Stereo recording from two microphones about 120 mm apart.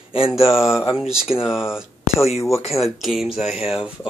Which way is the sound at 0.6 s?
5° right (ahead or behind).